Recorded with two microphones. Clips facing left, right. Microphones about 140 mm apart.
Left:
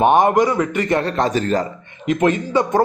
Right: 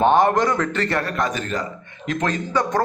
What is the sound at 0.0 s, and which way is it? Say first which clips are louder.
Speech: left 3 dB; 15° left (ahead or behind).